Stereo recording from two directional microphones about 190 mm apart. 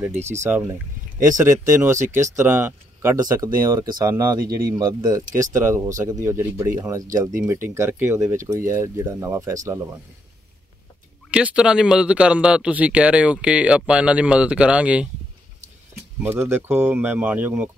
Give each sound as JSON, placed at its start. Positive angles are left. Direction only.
{"t": 0.1, "sound": "speech", "side_deg": -35}
{"t": 0.4, "sound": "speech", "side_deg": -10}
{"t": 4.4, "sound": "speech", "side_deg": -50}
{"t": 4.6, "sound": "speech", "side_deg": -20}
{"t": 11.2, "sound": "speech", "side_deg": -5}
{"t": 16.2, "sound": "speech", "side_deg": -10}